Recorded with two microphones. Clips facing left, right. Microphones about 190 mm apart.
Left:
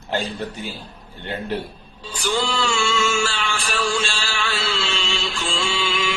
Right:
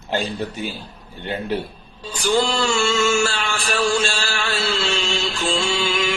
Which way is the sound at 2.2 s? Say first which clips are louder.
Right 4 dB; 45° right (ahead or behind).